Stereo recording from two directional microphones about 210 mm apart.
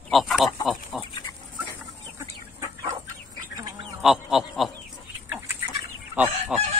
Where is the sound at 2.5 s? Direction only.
15° right (ahead or behind).